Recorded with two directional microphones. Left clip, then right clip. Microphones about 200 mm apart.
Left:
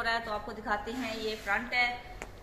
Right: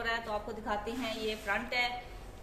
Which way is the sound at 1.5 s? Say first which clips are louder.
Left 4 dB; 55° right (ahead or behind).